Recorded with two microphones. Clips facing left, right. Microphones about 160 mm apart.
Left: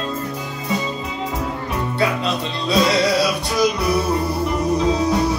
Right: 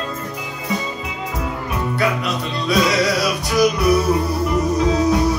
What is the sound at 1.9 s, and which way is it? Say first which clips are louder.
Music: even; 25° left (ahead or behind).